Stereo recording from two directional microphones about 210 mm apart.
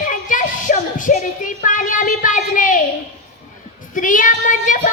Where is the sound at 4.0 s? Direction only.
40° left (ahead or behind).